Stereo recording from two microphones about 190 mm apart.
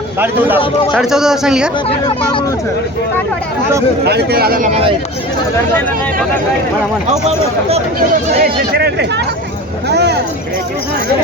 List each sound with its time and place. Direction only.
0.2 s speech: 10° right (ahead or behind)
1.9 s speech: 25° left (ahead or behind)
4.0 s speech: 55° right (ahead or behind)
8.4 s speech: 55° right (ahead or behind)